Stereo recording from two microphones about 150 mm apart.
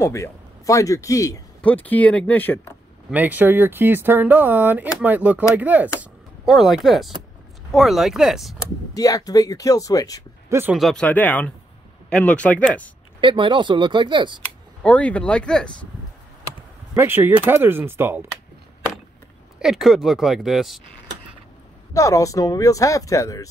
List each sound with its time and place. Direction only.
0.0 s speech: 20° left (ahead or behind)
1.6 s speech: 10° left (ahead or behind)
3.1 s speech: 10° right (ahead or behind)
8.9 s speech: 25° left (ahead or behind)
10.5 s speech: 15° right (ahead or behind)
10.8 s speech: 5° left (ahead or behind)
13.2 s speech: 30° right (ahead or behind)
14.8 s speech: 5° left (ahead or behind)
16.9 s speech: 15° right (ahead or behind)
19.6 s speech: centre (ahead or behind)
21.9 s speech: 20° left (ahead or behind)